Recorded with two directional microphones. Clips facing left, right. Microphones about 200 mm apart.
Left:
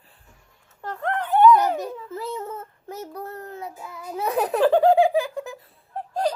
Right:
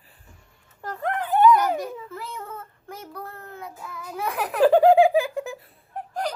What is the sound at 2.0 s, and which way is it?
Child singing, 25° left (ahead or behind).